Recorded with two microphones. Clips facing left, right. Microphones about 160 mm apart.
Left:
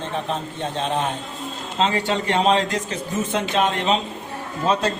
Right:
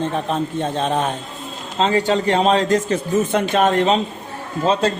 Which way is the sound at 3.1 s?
60° right (ahead or behind).